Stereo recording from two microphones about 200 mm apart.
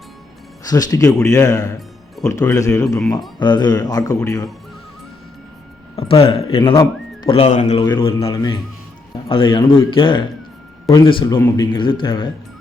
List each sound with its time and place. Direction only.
0.7 s speech: 20° left (ahead or behind)
6.0 s speech: 25° left (ahead or behind)
7.8 s speech: 25° left (ahead or behind)